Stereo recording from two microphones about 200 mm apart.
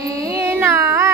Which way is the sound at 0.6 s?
15° right (ahead or behind).